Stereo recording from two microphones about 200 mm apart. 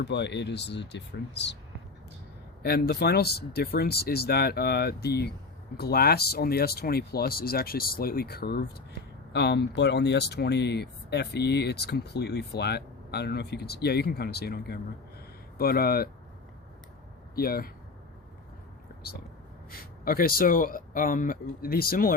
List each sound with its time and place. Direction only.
0.0 s speech: 60° left (ahead or behind)
2.6 s speech: 50° left (ahead or behind)
17.3 s speech: 50° left (ahead or behind)
19.7 s speech: 45° left (ahead or behind)